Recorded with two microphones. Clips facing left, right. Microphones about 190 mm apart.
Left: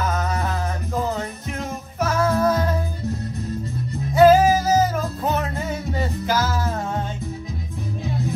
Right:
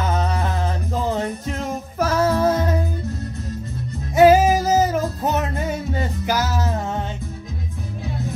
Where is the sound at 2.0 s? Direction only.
30° right (ahead or behind).